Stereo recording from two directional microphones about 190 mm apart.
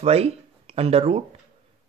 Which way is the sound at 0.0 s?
30° right (ahead or behind).